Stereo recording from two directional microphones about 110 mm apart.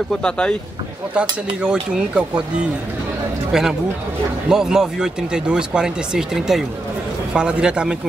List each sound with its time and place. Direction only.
0.2 s speech: 10° left (ahead or behind)
1.6 s speech: 10° right (ahead or behind)